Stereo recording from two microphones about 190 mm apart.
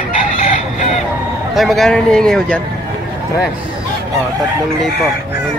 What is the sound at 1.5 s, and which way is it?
Speech, centre (ahead or behind).